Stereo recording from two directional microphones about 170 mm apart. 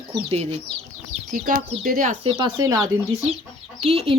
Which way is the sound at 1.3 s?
55° right (ahead or behind).